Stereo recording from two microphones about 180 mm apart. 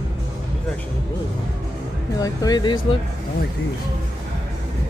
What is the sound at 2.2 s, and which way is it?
Speech, 20° left (ahead or behind).